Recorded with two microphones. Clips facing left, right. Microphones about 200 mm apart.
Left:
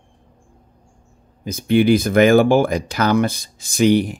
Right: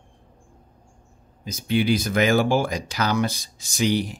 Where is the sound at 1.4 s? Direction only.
55° left (ahead or behind).